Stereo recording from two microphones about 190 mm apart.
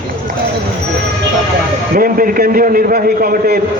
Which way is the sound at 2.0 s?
50° right (ahead or behind).